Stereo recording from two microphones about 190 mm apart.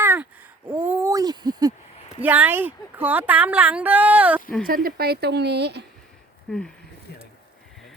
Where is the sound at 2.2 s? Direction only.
10° right (ahead or behind).